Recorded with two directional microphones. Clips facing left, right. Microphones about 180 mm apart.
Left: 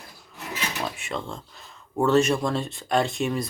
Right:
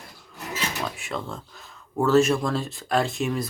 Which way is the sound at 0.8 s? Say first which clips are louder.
Even; centre (ahead or behind).